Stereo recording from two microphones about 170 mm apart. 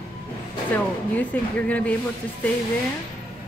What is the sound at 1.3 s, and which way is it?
Speech, 10° left (ahead or behind).